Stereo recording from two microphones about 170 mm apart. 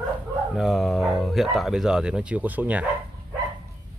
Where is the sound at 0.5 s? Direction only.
Centre (ahead or behind).